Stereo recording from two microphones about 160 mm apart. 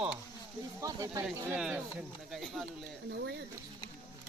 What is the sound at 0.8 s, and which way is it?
Speech, 20° right (ahead or behind).